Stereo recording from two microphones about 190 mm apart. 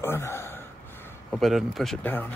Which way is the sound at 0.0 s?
15° left (ahead or behind).